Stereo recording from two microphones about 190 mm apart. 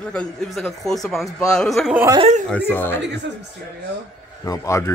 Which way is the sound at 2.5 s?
10° left (ahead or behind).